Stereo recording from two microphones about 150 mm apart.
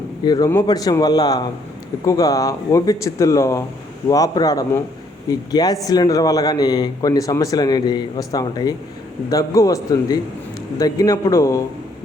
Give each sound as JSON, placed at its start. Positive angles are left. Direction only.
{"t": 0.3, "sound": "speech", "side_deg": 25}